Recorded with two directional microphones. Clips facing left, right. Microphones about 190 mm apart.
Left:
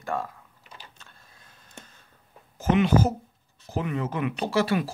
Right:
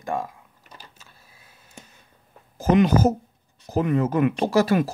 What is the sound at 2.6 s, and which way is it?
Speech, 40° right (ahead or behind).